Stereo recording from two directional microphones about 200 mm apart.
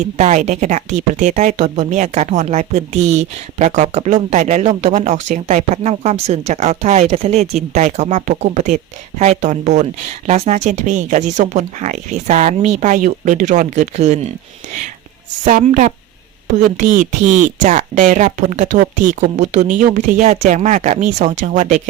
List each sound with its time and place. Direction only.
0.2 s speech: 35° right (ahead or behind)
15.4 s speech: 40° right (ahead or behind)